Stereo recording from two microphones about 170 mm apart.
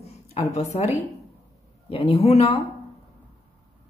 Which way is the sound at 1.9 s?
35° left (ahead or behind).